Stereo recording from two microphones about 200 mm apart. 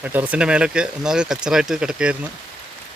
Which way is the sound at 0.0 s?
10° right (ahead or behind).